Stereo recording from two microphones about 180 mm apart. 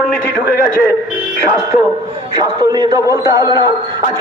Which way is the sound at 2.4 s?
20° right (ahead or behind).